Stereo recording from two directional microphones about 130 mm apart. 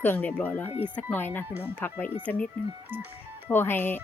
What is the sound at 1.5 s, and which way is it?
Speech, 15° right (ahead or behind).